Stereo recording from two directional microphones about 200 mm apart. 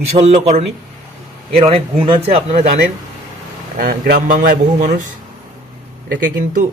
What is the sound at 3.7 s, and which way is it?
Speech, 50° right (ahead or behind).